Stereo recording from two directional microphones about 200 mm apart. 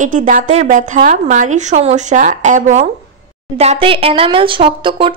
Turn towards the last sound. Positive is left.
turn(degrees=-25)  # may be behind; listen again after turning